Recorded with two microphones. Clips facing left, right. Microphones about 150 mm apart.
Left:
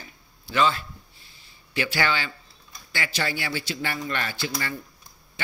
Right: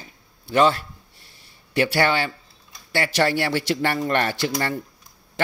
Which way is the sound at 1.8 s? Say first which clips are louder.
Right 6 dB; 55° right (ahead or behind).